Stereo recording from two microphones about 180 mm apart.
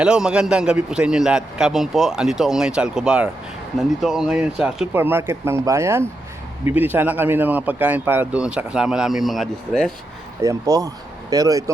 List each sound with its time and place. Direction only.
0.0 s a man's voice: 5° right (ahead or behind)
10.4 s speech: 20° right (ahead or behind)